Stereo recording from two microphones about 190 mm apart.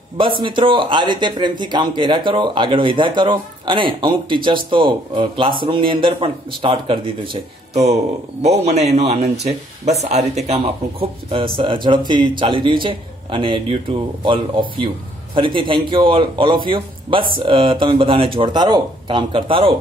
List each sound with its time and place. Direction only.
0.2 s speech: 25° right (ahead or behind)